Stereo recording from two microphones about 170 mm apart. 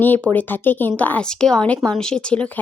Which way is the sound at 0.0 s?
10° left (ahead or behind).